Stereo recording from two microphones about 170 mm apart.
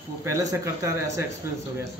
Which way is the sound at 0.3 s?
15° right (ahead or behind).